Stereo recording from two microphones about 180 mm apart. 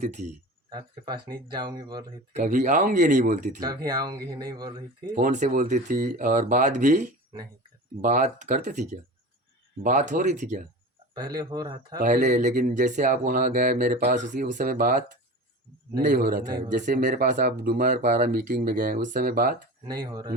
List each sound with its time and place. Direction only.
0.0 s speech: 40° right (ahead or behind)
0.7 s speech: 25° right (ahead or behind)
2.3 s speech: 45° right (ahead or behind)
3.8 s speech: 20° right (ahead or behind)
5.1 s speech: 45° right (ahead or behind)
11.3 s speech: 20° right (ahead or behind)
11.9 s a man's voice: 45° right (ahead or behind)
16.7 s speech: 45° right (ahead or behind)
19.8 s speech: 25° right (ahead or behind)